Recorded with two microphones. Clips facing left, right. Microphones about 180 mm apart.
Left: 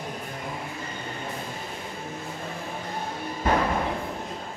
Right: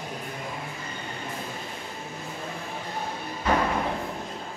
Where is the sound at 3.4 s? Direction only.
50° left (ahead or behind).